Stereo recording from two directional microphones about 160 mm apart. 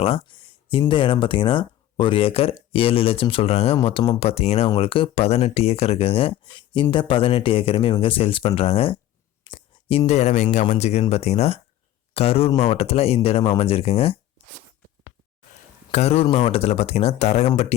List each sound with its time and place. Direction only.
0.0 s speech: 35° left (ahead or behind)
9.4 s clicking: 30° left (ahead or behind)
10.1 s speech: 45° left (ahead or behind)
15.9 s speech: 40° left (ahead or behind)